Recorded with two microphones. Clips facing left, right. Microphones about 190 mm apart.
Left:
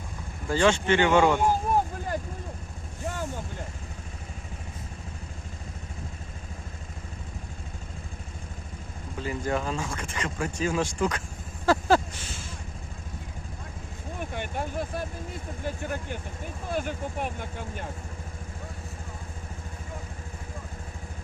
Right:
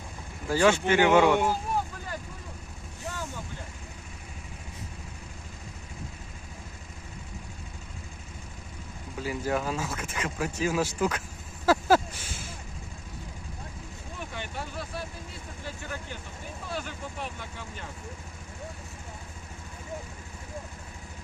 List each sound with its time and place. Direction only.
0.4 s speech: 5° right (ahead or behind)
1.5 s vehicle: 50° left (ahead or behind)
9.2 s speech: 5° right (ahead or behind)
11.6 s a sound: 5° right (ahead or behind)
14.2 s speech: 50° left (ahead or behind)